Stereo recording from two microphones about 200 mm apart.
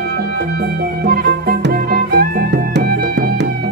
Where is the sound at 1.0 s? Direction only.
50° right (ahead or behind).